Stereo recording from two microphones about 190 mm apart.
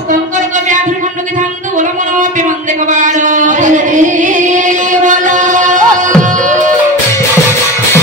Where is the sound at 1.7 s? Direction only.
40° right (ahead or behind).